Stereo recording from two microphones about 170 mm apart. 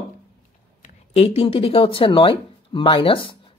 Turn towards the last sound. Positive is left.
turn(degrees=30)  # may be behind; listen again after turning